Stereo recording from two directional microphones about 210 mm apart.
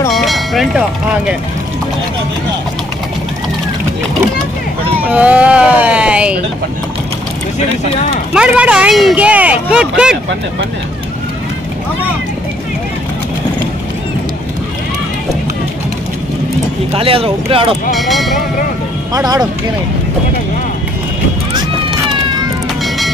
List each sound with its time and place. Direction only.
0.1 s speech: centre (ahead or behind)
5.1 s speech: 5° right (ahead or behind)
8.3 s speech: 5° right (ahead or behind)
16.9 s speech: 25° right (ahead or behind)
17.9 s speech: centre (ahead or behind)
19.1 s speech: 20° right (ahead or behind)